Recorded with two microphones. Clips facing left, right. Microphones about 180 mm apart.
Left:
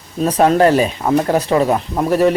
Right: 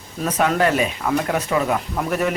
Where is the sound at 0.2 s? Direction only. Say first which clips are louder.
Left 7 dB; 35° left (ahead or behind).